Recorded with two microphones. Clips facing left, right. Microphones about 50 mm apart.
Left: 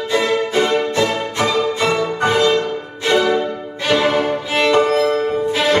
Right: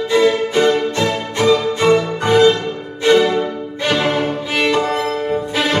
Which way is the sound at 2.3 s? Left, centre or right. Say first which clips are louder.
Right 4 dB; centre.